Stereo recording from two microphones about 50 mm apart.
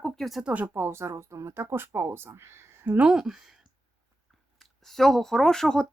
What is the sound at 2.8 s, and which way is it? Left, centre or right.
Speech, right.